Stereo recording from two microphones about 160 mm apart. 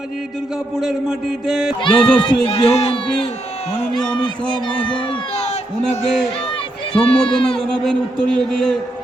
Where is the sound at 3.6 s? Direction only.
45° left (ahead or behind).